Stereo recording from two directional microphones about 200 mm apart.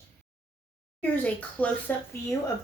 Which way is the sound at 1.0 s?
10° left (ahead or behind).